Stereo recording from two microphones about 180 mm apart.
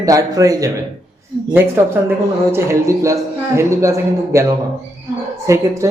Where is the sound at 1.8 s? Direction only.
15° right (ahead or behind).